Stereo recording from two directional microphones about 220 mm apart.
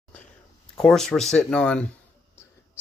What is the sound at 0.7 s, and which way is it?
Speech, centre (ahead or behind).